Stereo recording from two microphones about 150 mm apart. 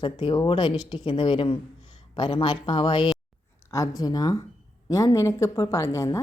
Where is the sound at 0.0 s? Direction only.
35° left (ahead or behind).